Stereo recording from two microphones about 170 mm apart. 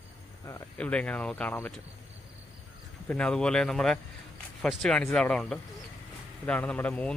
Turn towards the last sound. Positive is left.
turn(degrees=10)  # may be behind; listen again after turning